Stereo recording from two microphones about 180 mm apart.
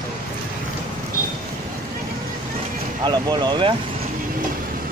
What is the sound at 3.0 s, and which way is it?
Speech, 25° right (ahead or behind).